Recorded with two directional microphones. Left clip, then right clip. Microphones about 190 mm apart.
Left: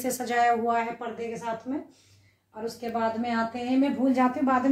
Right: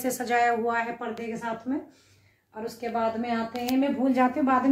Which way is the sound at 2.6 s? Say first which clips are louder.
Right 1 dB; 5° left (ahead or behind).